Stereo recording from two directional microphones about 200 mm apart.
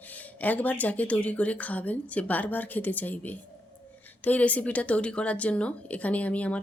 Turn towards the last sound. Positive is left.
turn(degrees=5)  # may be behind; listen again after turning